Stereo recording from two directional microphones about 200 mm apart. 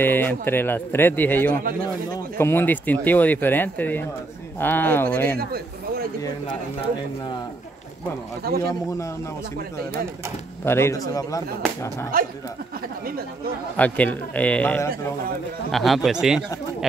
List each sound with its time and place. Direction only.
0.0 s speech: 10° left (ahead or behind)
5.4 s a sound: 50° right (ahead or behind)
8.5 s speech: 50° right (ahead or behind)
10.6 s speech: 10° left (ahead or behind)
13.7 s speech: 5° left (ahead or behind)